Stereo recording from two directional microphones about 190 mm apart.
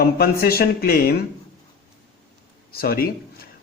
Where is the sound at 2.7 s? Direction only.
55° left (ahead or behind).